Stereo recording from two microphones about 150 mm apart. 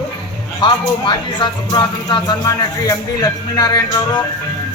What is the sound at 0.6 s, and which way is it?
Speech, 30° left (ahead or behind).